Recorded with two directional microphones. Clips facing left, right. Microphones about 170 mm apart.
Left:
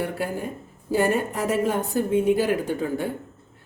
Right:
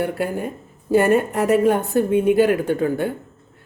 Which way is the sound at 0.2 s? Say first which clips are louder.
Right 4 dB; 65° right (ahead or behind).